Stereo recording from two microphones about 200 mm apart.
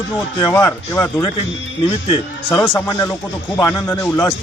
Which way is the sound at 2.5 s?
10° left (ahead or behind).